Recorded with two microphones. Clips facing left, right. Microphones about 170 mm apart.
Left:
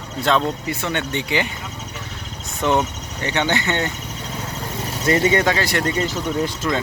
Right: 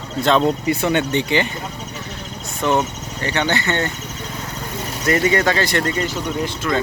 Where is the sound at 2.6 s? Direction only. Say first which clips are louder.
Right 1 dB; 15° left (ahead or behind).